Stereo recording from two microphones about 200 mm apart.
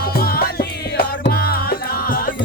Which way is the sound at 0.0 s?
50° left (ahead or behind).